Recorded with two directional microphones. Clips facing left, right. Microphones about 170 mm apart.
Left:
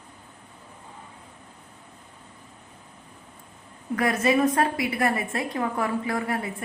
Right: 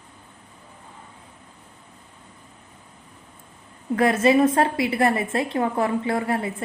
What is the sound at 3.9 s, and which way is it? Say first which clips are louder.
A woman's voice: right 5 dB; 30° right (ahead or behind).